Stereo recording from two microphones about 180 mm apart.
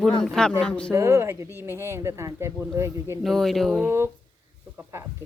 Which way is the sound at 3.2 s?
Centre (ahead or behind).